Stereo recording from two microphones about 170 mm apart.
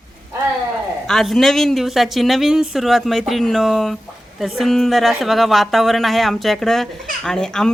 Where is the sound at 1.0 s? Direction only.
Centre (ahead or behind).